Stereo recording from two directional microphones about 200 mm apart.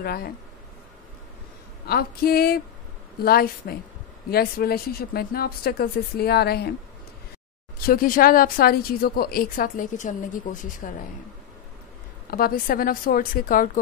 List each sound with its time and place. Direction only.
0.0 s a woman's voice: 50° left (ahead or behind)
1.9 s a woman's voice: 50° left (ahead or behind)
7.8 s a woman's voice: 45° left (ahead or behind)
12.3 s a woman's voice: 50° left (ahead or behind)